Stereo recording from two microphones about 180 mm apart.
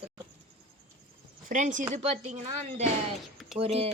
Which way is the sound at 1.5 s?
45° right (ahead or behind).